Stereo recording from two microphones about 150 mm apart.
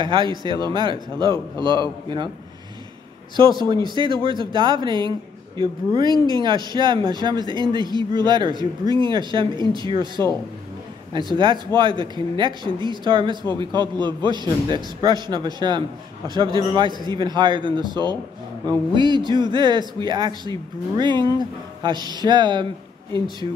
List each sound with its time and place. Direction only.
0.0 s speech: 35° right (ahead or behind)
3.3 s a man's voice: 30° right (ahead or behind)
6.1 s speech: 25° left (ahead or behind)
6.4 s a man's voice: 30° right (ahead or behind)